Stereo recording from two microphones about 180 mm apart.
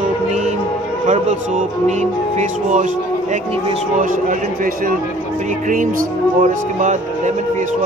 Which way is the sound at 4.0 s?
50° right (ahead or behind).